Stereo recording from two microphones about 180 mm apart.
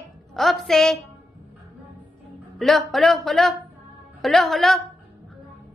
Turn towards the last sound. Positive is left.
turn(degrees=0)  # may be behind; listen again after turning